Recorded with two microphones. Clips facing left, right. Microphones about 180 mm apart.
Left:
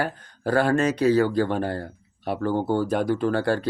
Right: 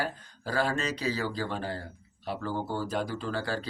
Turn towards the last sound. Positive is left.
turn(degrees=60)  # may be behind; listen again after turning